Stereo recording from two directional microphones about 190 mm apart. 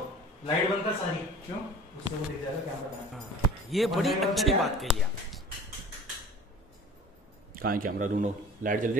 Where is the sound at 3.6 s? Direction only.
Centre (ahead or behind).